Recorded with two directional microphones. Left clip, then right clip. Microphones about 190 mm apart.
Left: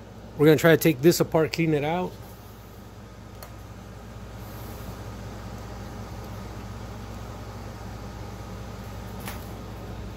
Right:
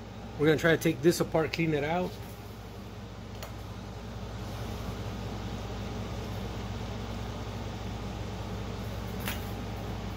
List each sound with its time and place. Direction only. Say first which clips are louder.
0.4 s speech: left 7 dB; 50° left (ahead or behind)